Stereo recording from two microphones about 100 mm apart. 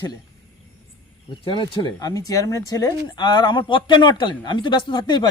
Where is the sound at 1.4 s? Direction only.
55° left (ahead or behind).